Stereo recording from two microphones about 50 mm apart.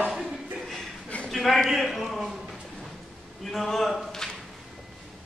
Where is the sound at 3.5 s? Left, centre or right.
Centre.